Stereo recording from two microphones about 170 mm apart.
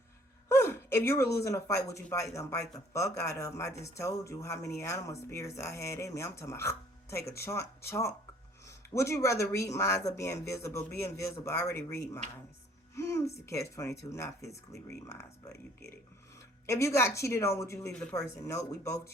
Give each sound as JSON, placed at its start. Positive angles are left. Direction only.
{"t": 0.4, "sound": "speech", "side_deg": 15}
{"t": 16.6, "sound": "speech", "side_deg": 15}